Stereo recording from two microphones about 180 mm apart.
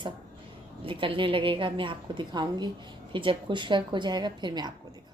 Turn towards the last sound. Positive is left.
turn(degrees=-25)  # may be behind; listen again after turning